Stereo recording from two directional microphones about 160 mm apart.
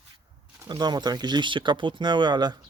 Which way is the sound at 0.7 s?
25° right (ahead or behind).